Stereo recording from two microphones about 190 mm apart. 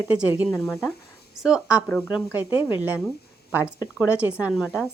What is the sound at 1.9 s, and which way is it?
Speech, 5° left (ahead or behind).